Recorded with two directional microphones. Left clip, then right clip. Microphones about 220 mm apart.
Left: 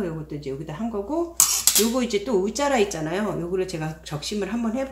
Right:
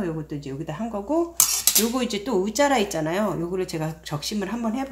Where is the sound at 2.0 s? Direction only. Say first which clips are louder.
Left 2 dB; 40° right (ahead or behind).